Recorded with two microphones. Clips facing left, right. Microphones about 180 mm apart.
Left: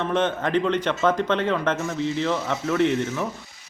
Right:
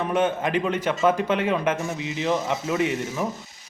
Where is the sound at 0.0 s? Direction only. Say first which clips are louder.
Even; 10° right (ahead or behind).